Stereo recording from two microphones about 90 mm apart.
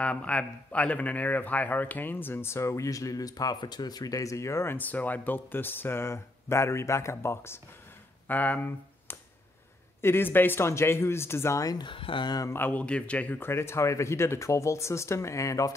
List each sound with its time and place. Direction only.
0.0 s a man's voice: 15° left (ahead or behind); by 4.7 s 30° left (ahead or behind)
4.7 s a man's voice: 20° left (ahead or behind)
8.3 s a man's voice: 20° left (ahead or behind)
11.6 s speech: 45° left (ahead or behind)
11.9 s speech: 70° left (ahead or behind)
12.5 s speech: 20° left (ahead or behind); by 15.7 s 35° left (ahead or behind)